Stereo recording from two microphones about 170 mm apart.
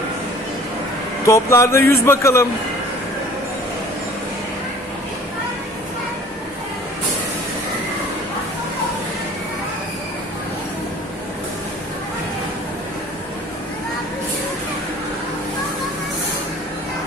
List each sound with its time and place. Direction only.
1.2 s speech: 15° left (ahead or behind)